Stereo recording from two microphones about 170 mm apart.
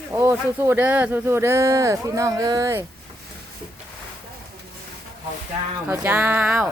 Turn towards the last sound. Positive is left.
turn(degrees=-5)  # may be behind; listen again after turning